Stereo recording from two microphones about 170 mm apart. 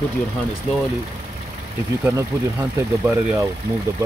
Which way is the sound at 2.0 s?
15° right (ahead or behind).